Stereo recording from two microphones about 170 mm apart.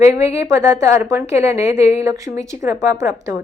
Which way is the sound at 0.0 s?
15° right (ahead or behind).